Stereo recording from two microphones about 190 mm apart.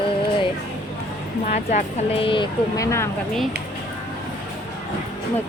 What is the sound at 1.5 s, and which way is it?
Speech, 40° left (ahead or behind).